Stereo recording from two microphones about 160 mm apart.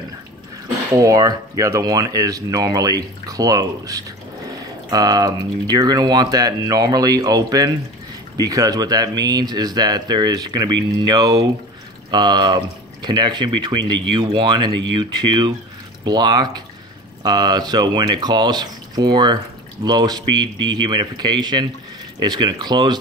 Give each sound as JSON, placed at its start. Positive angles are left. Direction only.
{"t": 0.9, "sound": "speech", "side_deg": -20}